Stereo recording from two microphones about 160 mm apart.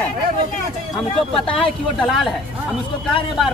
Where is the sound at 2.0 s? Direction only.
Centre (ahead or behind).